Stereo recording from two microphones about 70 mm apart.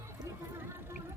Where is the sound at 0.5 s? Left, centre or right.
Right.